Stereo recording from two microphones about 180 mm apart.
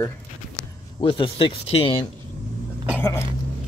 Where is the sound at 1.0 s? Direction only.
30° left (ahead or behind).